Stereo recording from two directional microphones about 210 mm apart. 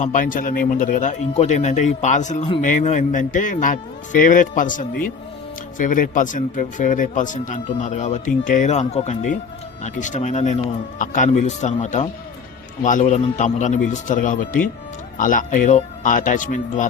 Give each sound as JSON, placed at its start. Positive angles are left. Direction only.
{"t": 0.0, "sound": "speech", "side_deg": 40}